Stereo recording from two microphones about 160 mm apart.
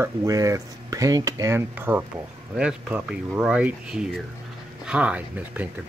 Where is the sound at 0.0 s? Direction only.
20° right (ahead or behind).